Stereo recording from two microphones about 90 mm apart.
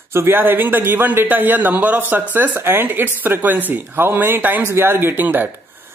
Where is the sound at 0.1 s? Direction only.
25° right (ahead or behind).